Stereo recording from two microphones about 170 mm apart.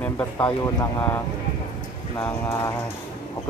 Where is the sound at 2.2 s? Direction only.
15° left (ahead or behind).